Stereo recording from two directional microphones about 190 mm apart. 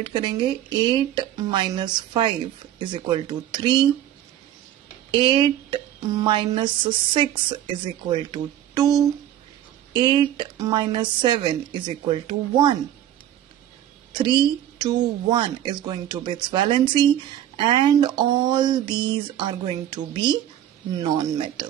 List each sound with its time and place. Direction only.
0.0 s speech: 25° right (ahead or behind)
5.1 s speech: 25° right (ahead or behind)
14.1 s speech: 25° right (ahead or behind)